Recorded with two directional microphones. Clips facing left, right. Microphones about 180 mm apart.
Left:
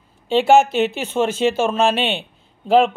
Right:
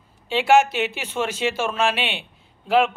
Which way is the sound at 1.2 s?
25° left (ahead or behind).